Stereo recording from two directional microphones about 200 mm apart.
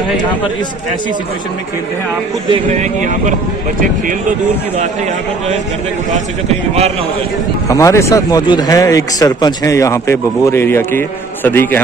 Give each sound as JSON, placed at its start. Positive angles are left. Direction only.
{"t": 2.5, "sound": "speech", "side_deg": -35}
{"t": 7.6, "sound": "speech", "side_deg": 15}